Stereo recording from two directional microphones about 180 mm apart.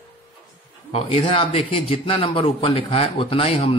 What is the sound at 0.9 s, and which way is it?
Speech, 35° left (ahead or behind).